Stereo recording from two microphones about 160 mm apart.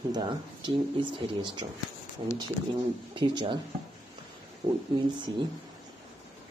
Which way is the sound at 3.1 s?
30° right (ahead or behind).